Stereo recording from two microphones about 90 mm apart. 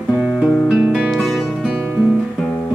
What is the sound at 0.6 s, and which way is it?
Music, 10° right (ahead or behind).